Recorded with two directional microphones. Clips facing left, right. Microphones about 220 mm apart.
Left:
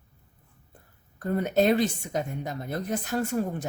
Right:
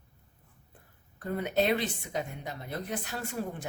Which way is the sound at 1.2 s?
45° left (ahead or behind).